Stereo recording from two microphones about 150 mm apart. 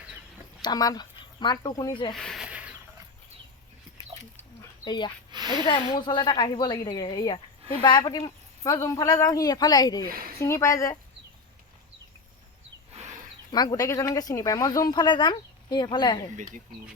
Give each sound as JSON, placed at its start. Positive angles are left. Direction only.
{"t": 0.6, "sound": "speech", "side_deg": 25}
{"t": 2.1, "sound": "a sound", "side_deg": 5}
{"t": 4.9, "sound": "speech", "side_deg": 30}
{"t": 5.3, "sound": "a sound", "side_deg": -30}
{"t": 5.6, "sound": "speech", "side_deg": 35}
{"t": 10.1, "sound": "speech", "side_deg": -80}
{"t": 10.4, "sound": "speech", "side_deg": 20}
{"t": 12.9, "sound": "a sound", "side_deg": -45}
{"t": 13.5, "sound": "speech", "side_deg": 25}